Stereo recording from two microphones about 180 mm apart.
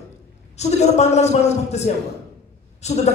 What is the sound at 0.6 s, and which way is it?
A woman's voice, 40° left (ahead or behind).